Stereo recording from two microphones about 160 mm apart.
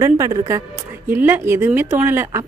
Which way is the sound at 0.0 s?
20° right (ahead or behind).